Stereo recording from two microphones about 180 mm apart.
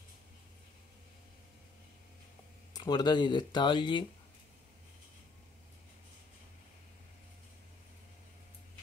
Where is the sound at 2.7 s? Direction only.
25° left (ahead or behind).